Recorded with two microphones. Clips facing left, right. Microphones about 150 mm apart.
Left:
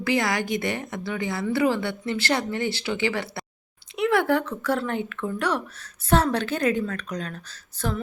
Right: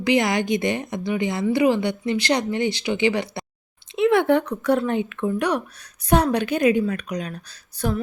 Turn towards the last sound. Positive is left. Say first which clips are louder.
# right 4 dB
turn(degrees=-15)  # may be behind; listen again after turning